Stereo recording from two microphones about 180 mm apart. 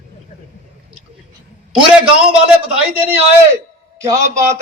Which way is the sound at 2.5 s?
10° right (ahead or behind).